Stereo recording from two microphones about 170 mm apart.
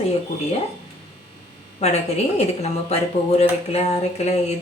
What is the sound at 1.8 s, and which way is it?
A woman's voice, 40° left (ahead or behind).